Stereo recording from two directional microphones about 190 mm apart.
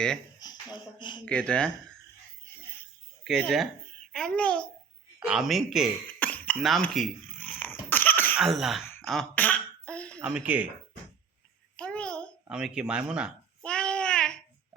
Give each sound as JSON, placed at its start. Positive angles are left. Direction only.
{"t": 0.3, "sound": "speech", "side_deg": 20}
{"t": 1.2, "sound": "speech", "side_deg": 5}
{"t": 3.2, "sound": "speech", "side_deg": 0}
{"t": 5.2, "sound": "a sound", "side_deg": -5}
{"t": 8.4, "sound": "speech", "side_deg": 0}
{"t": 9.0, "sound": "throat clearing", "side_deg": 0}
{"t": 10.2, "sound": "speech", "side_deg": -5}
{"t": 11.8, "sound": "a sound", "side_deg": 5}
{"t": 13.6, "sound": "babbling", "side_deg": 5}